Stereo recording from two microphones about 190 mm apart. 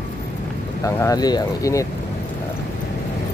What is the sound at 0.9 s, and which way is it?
Speech, 15° left (ahead or behind).